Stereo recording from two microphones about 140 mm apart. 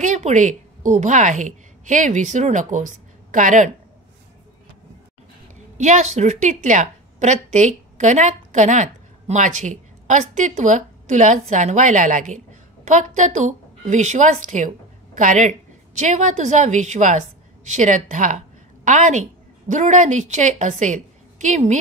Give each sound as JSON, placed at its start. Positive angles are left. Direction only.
{"t": 0.0, "sound": "a woman's voice", "side_deg": -60}
{"t": 5.8, "sound": "a woman's voice", "side_deg": -55}